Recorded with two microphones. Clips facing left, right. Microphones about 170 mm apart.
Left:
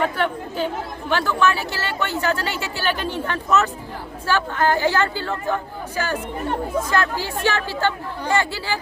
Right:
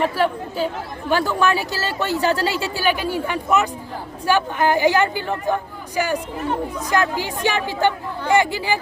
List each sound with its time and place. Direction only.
0.0 s speech: 35° right (ahead or behind)
1.1 s a man's voice: 15° right (ahead or behind)
1.7 s speech: 40° right (ahead or behind)
2.7 s a man's voice: 10° right (ahead or behind)